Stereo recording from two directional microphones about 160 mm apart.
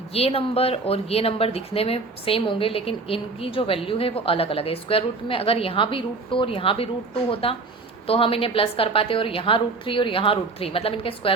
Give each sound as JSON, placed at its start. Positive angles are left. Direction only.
{"t": 0.1, "sound": "speech", "side_deg": 40}